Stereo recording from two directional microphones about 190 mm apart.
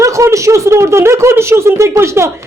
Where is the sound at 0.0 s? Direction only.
15° right (ahead or behind).